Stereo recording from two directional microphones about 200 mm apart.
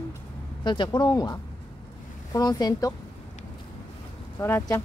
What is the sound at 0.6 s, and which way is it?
A child's voice, 20° left (ahead or behind).